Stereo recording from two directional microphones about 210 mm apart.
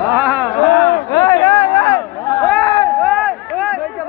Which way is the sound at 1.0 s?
15° left (ahead or behind).